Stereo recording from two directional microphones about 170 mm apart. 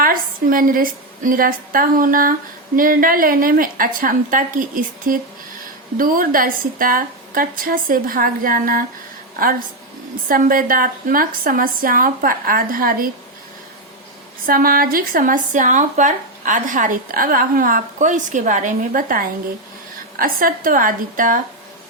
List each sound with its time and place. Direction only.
0.0 s a woman's voice: 55° right (ahead or behind)
14.4 s a woman's voice: 60° right (ahead or behind)